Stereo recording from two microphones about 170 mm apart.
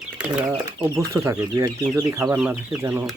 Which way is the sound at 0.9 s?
15° right (ahead or behind).